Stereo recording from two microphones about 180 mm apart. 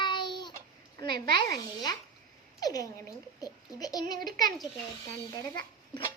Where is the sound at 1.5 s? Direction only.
20° left (ahead or behind).